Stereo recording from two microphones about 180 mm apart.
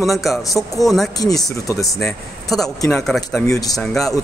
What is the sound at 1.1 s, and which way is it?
Speech, 20° left (ahead or behind).